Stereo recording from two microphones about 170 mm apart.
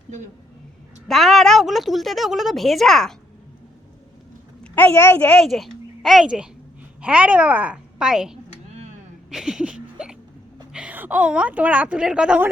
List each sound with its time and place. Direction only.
1.0 s a woman's voice: centre (ahead or behind)
4.6 s a woman's voice: 10° left (ahead or behind)
5.4 s a woman's voice: centre (ahead or behind)
9.3 s hiccup: 5° right (ahead or behind)
10.7 s a woman's voice: 5° right (ahead or behind)